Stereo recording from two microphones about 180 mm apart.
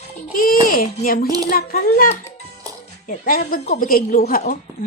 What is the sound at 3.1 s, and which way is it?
A woman's voice, 50° left (ahead or behind).